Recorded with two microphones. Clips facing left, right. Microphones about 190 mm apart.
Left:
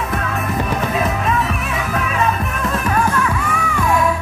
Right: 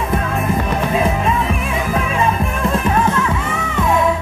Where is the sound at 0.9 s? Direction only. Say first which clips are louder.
Right 5 dB; 30° right (ahead or behind).